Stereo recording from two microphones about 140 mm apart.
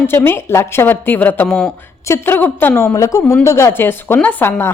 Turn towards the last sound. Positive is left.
turn(degrees=15)  # may be behind; listen again after turning